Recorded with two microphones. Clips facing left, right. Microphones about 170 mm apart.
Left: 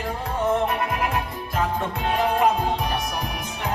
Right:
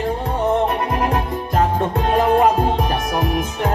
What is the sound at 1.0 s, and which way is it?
Music, 40° right (ahead or behind).